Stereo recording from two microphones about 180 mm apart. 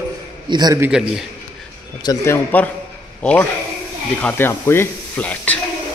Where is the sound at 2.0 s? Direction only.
15° left (ahead or behind).